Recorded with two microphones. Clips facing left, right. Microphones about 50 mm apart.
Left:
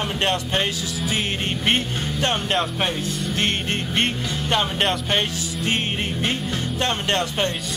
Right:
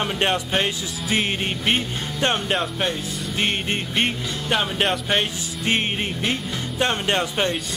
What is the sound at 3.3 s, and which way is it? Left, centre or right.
Music, centre.